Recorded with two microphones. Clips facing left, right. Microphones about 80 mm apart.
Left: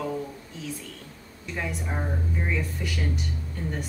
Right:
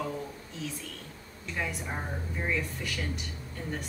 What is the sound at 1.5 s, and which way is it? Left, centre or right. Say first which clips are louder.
Speech: left 3 dB; centre.